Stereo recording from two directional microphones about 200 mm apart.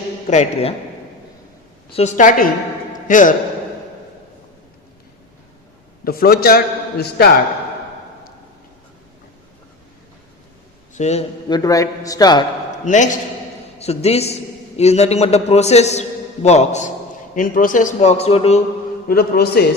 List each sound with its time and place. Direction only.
0.3 s a man's voice: 35° left (ahead or behind)
1.9 s a man's voice: 35° left (ahead or behind)
6.1 s a man's voice: 50° left (ahead or behind)
10.9 s a man's voice: 35° left (ahead or behind)
11.4 s a man's voice: 20° left (ahead or behind)
12.8 s a man's voice: 35° left (ahead or behind)
19.0 s a man's voice: 50° left (ahead or behind)